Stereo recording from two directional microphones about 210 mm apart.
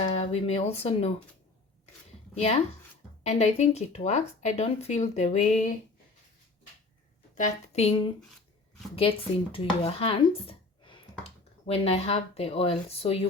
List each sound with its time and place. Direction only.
0.0 s speech: 30° left (ahead or behind)
2.3 s speech: 30° left (ahead or behind)
7.3 s a woman's voice: 35° left (ahead or behind)